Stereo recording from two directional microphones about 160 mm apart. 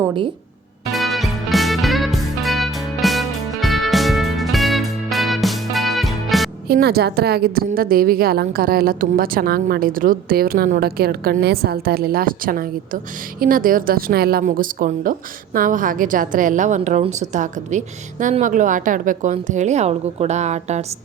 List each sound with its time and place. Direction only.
0.9 s music: centre (ahead or behind)
6.7 s a woman's voice: 80° right; by 20.8 s 45° right (ahead or behind)